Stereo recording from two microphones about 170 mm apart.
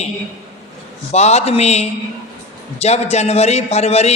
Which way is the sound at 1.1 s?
40° left (ahead or behind).